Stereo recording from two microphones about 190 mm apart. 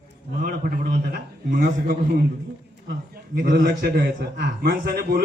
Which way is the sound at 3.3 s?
55° right (ahead or behind).